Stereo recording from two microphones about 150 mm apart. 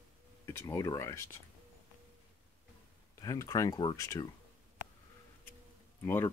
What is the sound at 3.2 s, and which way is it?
Speech, 20° left (ahead or behind).